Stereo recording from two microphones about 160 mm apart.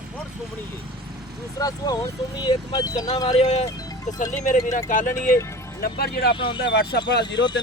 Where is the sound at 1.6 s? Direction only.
25° left (ahead or behind).